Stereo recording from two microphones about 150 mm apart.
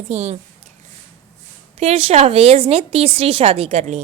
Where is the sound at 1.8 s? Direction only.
45° right (ahead or behind).